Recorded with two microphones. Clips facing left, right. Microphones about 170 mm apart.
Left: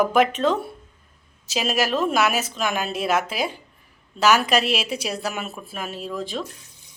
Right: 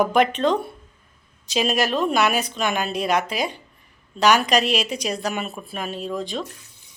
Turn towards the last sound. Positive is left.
turn(degrees=5)  # may be behind; listen again after turning